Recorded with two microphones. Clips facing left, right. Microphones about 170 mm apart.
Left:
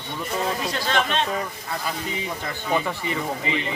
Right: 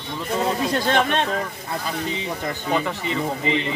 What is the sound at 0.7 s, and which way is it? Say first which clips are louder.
Speech: right 4 dB; 55° right (ahead or behind).